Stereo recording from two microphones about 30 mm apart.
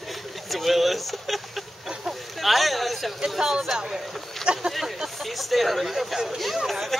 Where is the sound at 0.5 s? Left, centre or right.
Centre.